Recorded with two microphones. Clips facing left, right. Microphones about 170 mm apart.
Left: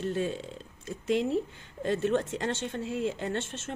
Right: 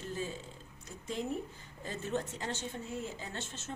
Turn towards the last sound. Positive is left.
turn(degrees=85)